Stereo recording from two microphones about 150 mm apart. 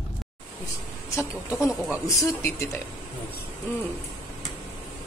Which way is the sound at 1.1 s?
15° left (ahead or behind).